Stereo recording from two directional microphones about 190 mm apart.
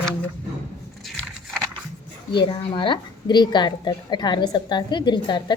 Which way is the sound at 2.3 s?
25° left (ahead or behind).